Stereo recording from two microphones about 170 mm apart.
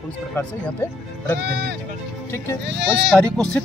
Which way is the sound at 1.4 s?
75° right (ahead or behind).